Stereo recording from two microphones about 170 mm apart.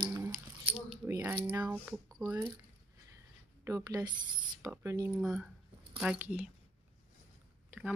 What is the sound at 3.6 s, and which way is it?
Speech, 20° right (ahead or behind).